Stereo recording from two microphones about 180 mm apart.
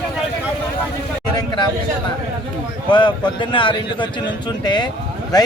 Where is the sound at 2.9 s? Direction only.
25° left (ahead or behind).